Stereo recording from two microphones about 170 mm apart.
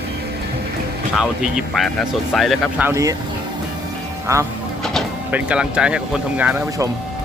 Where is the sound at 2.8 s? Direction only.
15° right (ahead or behind).